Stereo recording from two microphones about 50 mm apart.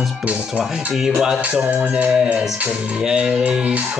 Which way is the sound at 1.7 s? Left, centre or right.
Right.